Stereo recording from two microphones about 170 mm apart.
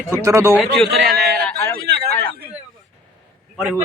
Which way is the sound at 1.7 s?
65° right (ahead or behind).